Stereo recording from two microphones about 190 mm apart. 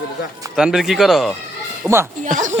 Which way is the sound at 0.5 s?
5° right (ahead or behind).